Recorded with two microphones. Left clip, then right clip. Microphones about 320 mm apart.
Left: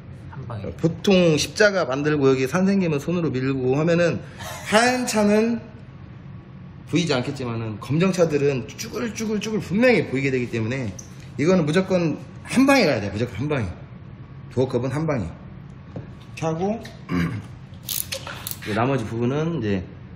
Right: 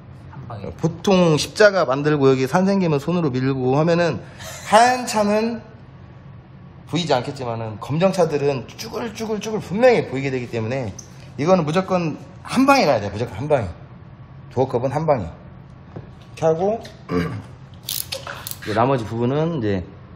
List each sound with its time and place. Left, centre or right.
0.7 s a man's voice: right
4.4 s a man's voice: centre
4.6 s a man's voice: right
6.9 s a man's voice: right
16.3 s speech: right
18.8 s speech: right